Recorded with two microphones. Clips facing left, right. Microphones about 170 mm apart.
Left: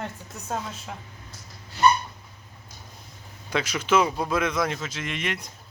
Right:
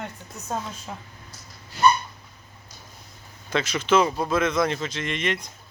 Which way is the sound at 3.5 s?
10° left (ahead or behind).